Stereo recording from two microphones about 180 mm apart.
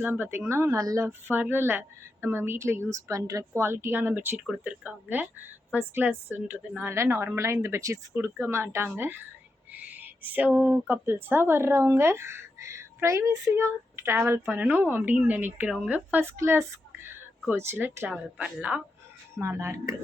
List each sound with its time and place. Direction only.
0.0 s a woman's voice: 10° right (ahead or behind)